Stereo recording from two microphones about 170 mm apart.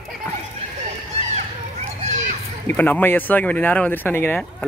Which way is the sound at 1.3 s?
45° right (ahead or behind).